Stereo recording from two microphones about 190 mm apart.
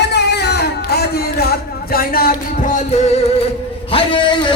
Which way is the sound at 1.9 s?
50° left (ahead or behind).